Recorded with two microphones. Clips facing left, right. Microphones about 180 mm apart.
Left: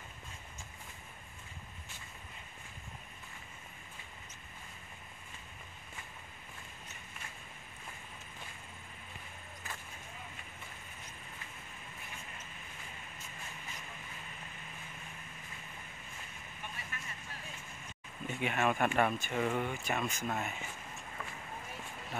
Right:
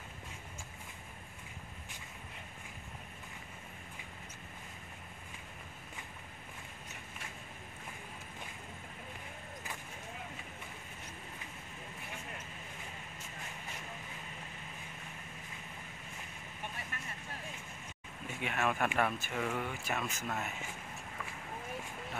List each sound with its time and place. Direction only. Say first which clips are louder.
18.3 s speech: left 2 dB; centre (ahead or behind)